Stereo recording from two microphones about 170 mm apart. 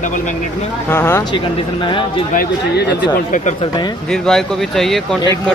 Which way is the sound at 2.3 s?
75° left (ahead or behind).